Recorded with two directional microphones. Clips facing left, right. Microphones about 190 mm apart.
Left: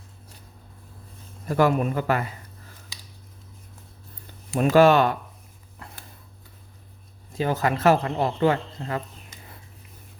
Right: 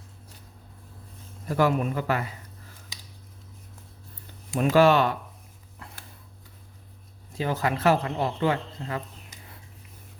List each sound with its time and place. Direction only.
1.5 s speech: 50° left (ahead or behind)
4.6 s speech: 45° left (ahead or behind)
5.8 s a sound: 45° left (ahead or behind)
7.3 s speech: 45° left (ahead or behind)